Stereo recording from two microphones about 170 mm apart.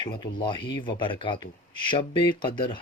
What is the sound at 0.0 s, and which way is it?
A man's voice, 25° left (ahead or behind).